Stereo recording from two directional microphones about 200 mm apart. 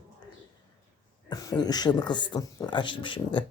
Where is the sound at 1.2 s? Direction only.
20° left (ahead or behind).